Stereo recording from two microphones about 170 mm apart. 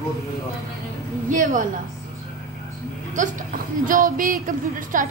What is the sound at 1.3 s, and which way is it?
Speech, 50° right (ahead or behind).